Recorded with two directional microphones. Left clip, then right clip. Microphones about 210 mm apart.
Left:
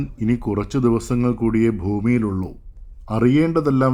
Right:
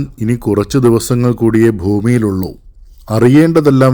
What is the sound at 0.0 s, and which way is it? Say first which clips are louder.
A man's voice: right 6 dB; 10° right (ahead or behind).